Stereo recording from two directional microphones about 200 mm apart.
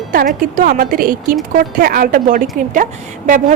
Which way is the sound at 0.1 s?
45° right (ahead or behind).